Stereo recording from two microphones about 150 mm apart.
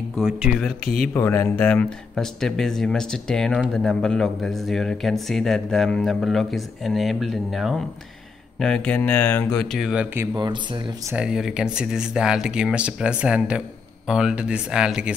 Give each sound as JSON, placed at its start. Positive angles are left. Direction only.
{"t": 0.2, "sound": "speech", "side_deg": -5}
{"t": 1.1, "sound": "speech", "side_deg": 15}
{"t": 10.3, "sound": "speech", "side_deg": -30}
{"t": 11.1, "sound": "speech", "side_deg": -5}